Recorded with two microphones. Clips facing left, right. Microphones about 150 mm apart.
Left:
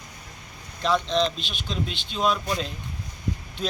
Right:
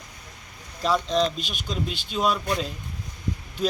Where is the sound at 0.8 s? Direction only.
10° right (ahead or behind).